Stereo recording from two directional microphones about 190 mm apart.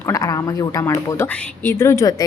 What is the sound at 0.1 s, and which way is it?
A woman's voice, 20° left (ahead or behind).